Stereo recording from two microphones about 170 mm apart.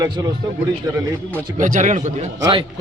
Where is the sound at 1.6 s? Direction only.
45° right (ahead or behind).